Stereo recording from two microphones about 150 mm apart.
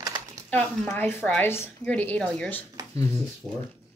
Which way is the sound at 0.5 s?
10° left (ahead or behind).